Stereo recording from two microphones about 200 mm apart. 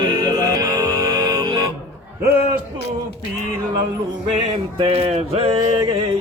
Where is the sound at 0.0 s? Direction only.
20° right (ahead or behind).